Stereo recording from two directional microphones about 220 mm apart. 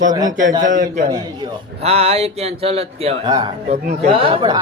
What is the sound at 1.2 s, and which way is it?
A man's voice, 20° right (ahead or behind).